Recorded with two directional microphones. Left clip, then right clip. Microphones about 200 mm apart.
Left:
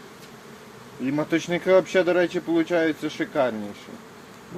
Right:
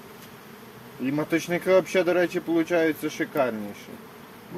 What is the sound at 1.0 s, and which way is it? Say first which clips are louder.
Speech: left 1 dB; 15° left (ahead or behind).